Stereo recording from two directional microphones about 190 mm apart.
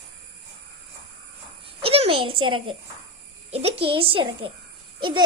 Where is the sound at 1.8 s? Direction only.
30° right (ahead or behind).